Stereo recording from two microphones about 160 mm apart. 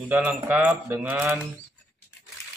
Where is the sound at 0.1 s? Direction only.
10° right (ahead or behind).